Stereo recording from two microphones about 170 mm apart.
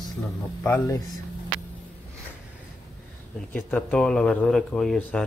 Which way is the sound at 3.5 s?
10° left (ahead or behind).